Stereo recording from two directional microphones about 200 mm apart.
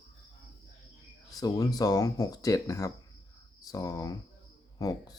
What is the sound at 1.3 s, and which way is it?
Speech, 20° left (ahead or behind).